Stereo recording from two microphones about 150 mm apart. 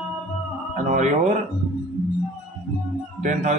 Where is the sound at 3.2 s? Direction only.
55° right (ahead or behind).